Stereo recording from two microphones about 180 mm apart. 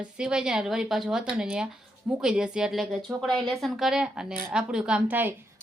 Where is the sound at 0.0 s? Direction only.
5° right (ahead or behind).